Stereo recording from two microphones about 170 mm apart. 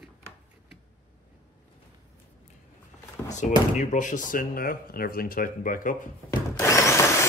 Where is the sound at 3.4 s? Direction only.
45° left (ahead or behind).